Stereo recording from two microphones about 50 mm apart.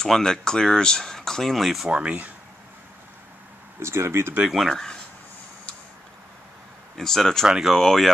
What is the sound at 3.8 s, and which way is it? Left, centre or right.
Speech, right.